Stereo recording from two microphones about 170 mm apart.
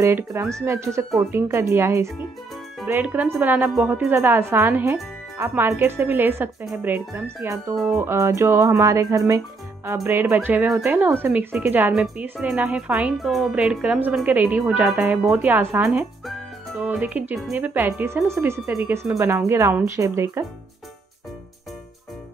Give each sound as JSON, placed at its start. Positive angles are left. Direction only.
{"t": 0.0, "sound": "a woman's voice", "side_deg": -15}
{"t": 8.0, "sound": "a woman's voice", "side_deg": -15}
{"t": 16.3, "sound": "a woman's voice", "side_deg": 0}